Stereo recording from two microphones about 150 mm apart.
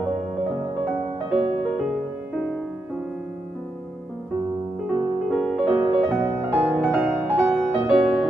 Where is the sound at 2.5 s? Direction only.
5° right (ahead or behind).